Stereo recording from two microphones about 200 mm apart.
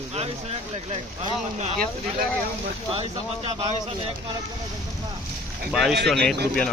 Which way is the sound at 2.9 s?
30° right (ahead or behind).